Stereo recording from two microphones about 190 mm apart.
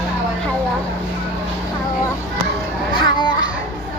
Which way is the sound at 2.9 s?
25° left (ahead or behind).